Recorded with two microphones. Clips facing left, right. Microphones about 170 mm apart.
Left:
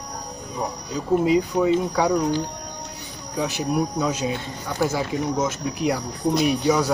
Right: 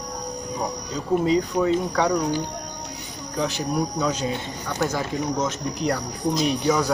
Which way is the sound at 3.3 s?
5° left (ahead or behind).